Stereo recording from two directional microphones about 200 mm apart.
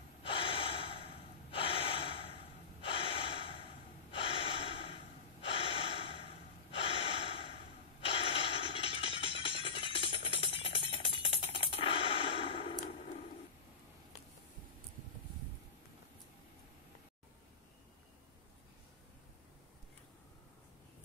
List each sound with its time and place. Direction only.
0.2 s gasp: 25° left (ahead or behind)
8.0 s music: 25° left (ahead or behind)